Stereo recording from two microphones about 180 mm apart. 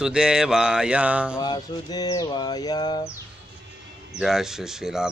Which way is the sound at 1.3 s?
20° left (ahead or behind).